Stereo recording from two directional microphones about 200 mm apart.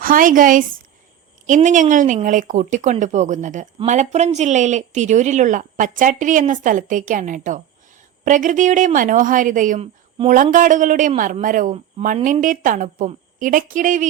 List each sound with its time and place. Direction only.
0.0 s a woman's voice: 45° right (ahead or behind)